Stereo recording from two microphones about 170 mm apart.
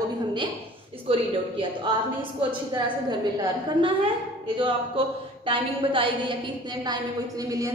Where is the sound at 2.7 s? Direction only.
25° right (ahead or behind).